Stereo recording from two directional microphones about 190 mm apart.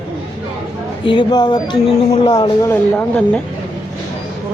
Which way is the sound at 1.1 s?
25° left (ahead or behind).